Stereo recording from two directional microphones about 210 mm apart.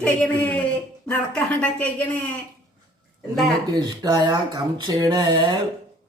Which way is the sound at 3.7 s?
20° right (ahead or behind).